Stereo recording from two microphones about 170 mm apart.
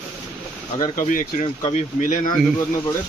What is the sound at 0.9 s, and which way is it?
Speech, 50° left (ahead or behind).